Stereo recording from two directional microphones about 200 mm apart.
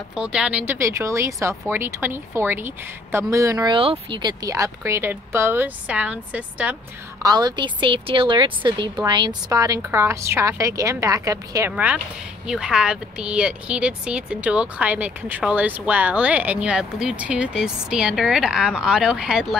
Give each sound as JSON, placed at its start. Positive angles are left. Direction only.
{"t": 0.1, "sound": "speech", "side_deg": -5}
{"t": 7.2, "sound": "speech", "side_deg": -20}